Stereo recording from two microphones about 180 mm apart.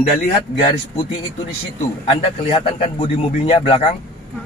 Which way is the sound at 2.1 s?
30° left (ahead or behind).